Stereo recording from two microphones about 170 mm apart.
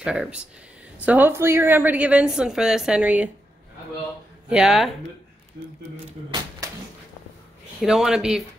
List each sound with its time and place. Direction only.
0.0 s a man's voice: 5° right (ahead or behind)
4.5 s a man's voice: 5° right (ahead or behind)
7.8 s a man's voice: 5° right (ahead or behind)